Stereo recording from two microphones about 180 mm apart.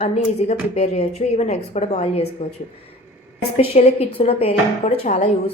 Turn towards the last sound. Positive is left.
turn(degrees=35)  # may be behind; listen again after turning